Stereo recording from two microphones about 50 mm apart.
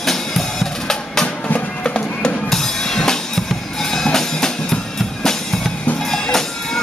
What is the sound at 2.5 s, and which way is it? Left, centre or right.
Drum kit, centre.